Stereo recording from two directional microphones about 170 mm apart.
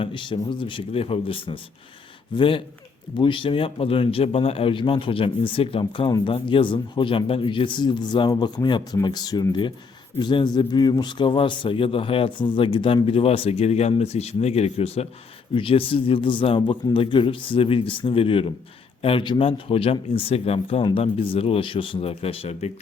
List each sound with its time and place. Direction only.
0.0 s a man's voice: 30° left (ahead or behind)